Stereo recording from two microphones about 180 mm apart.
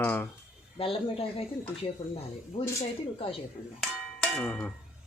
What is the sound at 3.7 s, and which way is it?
Bell, 5° left (ahead or behind).